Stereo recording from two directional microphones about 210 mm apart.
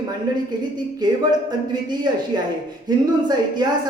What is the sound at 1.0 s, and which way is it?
Speech, 20° right (ahead or behind).